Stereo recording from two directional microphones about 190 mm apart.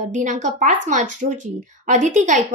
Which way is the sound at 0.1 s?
40° right (ahead or behind).